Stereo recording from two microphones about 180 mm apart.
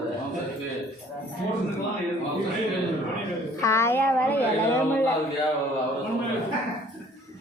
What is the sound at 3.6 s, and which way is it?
A woman's voice, 15° left (ahead or behind).